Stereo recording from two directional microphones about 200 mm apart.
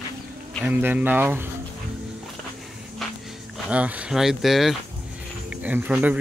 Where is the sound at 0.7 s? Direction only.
10° right (ahead or behind).